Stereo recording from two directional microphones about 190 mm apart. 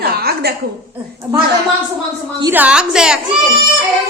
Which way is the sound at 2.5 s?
10° right (ahead or behind).